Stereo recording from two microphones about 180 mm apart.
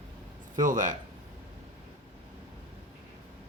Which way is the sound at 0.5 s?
45° right (ahead or behind).